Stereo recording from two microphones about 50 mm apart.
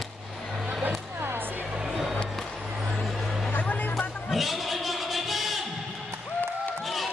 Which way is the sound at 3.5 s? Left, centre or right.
Left.